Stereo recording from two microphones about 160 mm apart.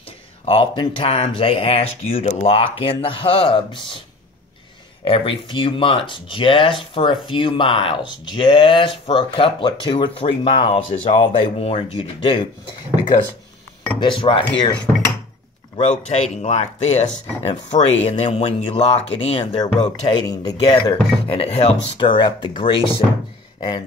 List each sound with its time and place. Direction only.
0.5 s speech: 35° left (ahead or behind)
5.0 s speech: 35° left (ahead or behind)
10.9 s speech: 50° left (ahead or behind); by 14.4 s 30° left (ahead or behind)
15.7 s speech: 40° left (ahead or behind); by 20.7 s 25° left (ahead or behind)
21.3 s speech: 40° left (ahead or behind)